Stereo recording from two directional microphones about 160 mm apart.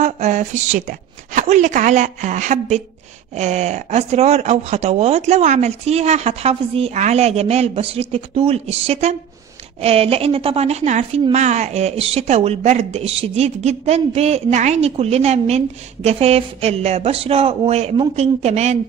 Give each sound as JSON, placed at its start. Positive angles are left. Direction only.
{"t": 0.0, "sound": "a woman's voice", "side_deg": -50}